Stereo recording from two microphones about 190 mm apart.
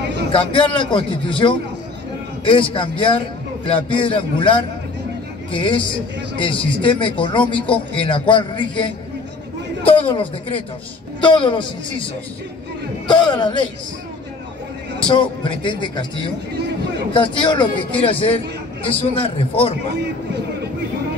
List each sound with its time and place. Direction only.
0.3 s a man's voice: 25° left (ahead or behind)
15.0 s a man's voice: 25° left (ahead or behind)